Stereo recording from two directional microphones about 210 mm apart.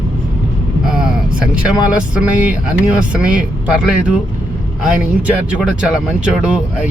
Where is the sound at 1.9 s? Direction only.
5° right (ahead or behind).